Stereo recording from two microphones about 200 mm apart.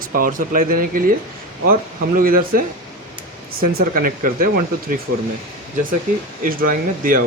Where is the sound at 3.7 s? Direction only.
45° right (ahead or behind).